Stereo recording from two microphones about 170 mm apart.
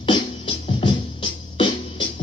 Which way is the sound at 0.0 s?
30° left (ahead or behind).